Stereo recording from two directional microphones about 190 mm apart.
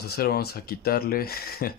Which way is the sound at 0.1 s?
55° left (ahead or behind).